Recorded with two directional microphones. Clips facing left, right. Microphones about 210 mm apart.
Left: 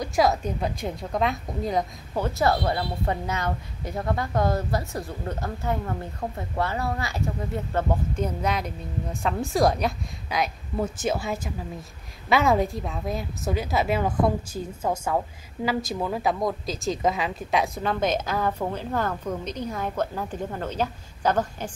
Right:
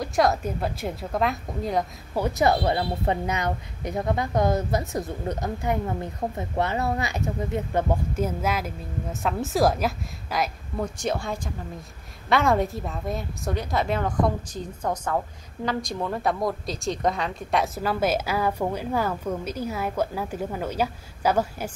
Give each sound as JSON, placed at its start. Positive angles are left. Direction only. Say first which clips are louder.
{"t": 0.0, "sound": "speech", "louder": "even", "side_deg": 0}
{"t": 2.1, "sound": "a woman's voice", "louder": "right 2 dB", "side_deg": -15}